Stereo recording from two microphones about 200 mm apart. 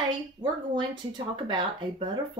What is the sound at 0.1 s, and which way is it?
Speech, 25° right (ahead or behind).